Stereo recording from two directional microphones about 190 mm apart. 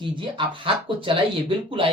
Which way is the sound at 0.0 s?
25° right (ahead or behind).